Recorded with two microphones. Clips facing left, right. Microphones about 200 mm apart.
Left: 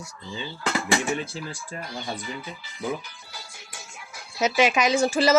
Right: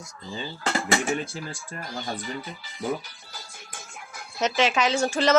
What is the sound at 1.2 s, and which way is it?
Speech, 50° right (ahead or behind).